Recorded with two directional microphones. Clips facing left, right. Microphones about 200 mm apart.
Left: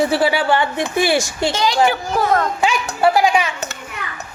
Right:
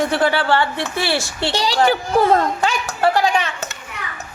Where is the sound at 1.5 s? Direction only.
35° right (ahead or behind).